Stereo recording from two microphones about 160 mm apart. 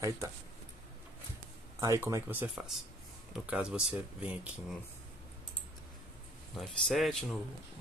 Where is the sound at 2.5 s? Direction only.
Centre (ahead or behind).